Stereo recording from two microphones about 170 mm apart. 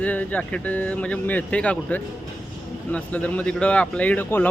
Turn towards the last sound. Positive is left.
turn(degrees=10)  # may be behind; listen again after turning